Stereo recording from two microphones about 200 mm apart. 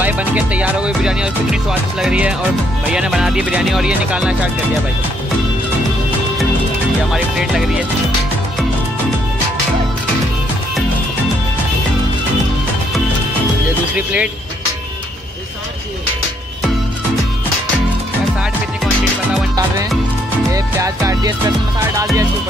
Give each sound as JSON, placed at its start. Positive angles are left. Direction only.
{"t": 0.0, "sound": "music", "side_deg": -10}
{"t": 2.9, "sound": "speech", "side_deg": -5}
{"t": 7.1, "sound": "speech", "side_deg": -5}
{"t": 13.9, "sound": "music", "side_deg": -5}
{"t": 20.5, "sound": "music", "side_deg": -15}